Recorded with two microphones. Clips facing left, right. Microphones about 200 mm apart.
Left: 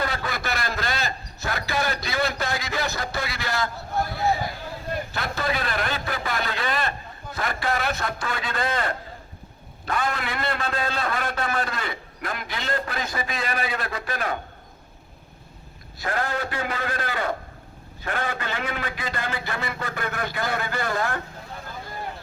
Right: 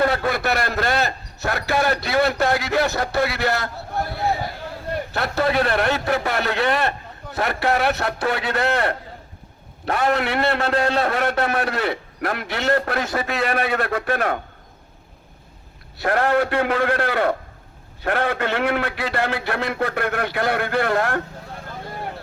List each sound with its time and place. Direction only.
0.0 s a man's voice: 55° right (ahead or behind)
5.1 s a man's voice: 65° right (ahead or behind)
16.0 s a man's voice: 65° right (ahead or behind)